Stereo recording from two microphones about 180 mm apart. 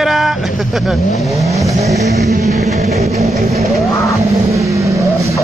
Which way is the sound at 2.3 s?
40° right (ahead or behind).